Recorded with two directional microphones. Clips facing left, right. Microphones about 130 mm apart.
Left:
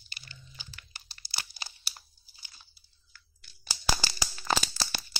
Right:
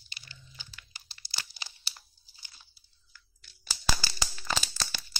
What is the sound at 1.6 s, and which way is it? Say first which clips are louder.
Crumpling: left 2 dB; 40° left (ahead or behind).